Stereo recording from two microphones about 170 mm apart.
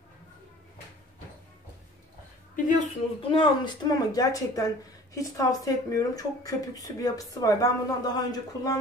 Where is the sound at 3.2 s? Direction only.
30° left (ahead or behind).